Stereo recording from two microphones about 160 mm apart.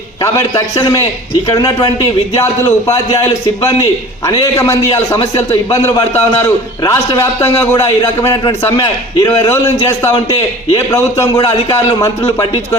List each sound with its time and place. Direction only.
0.2 s a man's voice: 20° left (ahead or behind)
4.5 s a man's voice: 20° left (ahead or behind)